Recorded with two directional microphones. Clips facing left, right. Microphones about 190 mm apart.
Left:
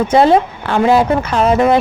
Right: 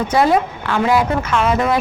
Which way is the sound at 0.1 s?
30° left (ahead or behind).